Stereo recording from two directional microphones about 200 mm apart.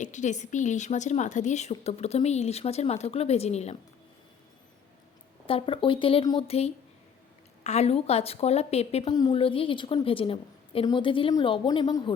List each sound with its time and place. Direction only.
0.0 s a woman's voice: 35° left (ahead or behind)
5.5 s a woman's voice: 25° left (ahead or behind)